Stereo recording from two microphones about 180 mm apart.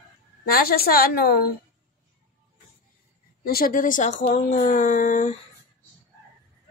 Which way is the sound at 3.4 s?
55° left (ahead or behind).